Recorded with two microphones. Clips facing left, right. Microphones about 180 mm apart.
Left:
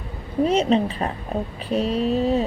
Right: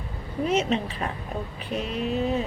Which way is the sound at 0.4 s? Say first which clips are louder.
Left 5 dB; 35° left (ahead or behind).